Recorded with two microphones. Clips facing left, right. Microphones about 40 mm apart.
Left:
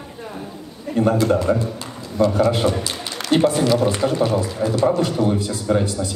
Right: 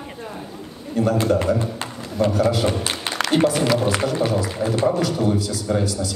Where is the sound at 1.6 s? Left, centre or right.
Right.